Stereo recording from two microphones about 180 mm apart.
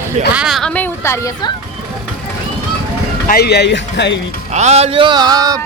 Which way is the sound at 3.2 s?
60° left (ahead or behind).